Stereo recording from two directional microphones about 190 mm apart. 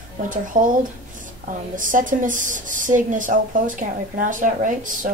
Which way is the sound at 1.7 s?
45° right (ahead or behind).